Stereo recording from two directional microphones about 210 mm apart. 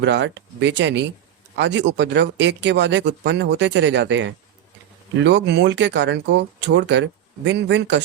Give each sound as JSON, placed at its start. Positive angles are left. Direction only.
{"t": 0.0, "sound": "speech", "side_deg": -55}